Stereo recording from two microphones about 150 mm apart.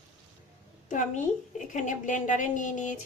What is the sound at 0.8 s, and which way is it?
A child's voice, 55° left (ahead or behind).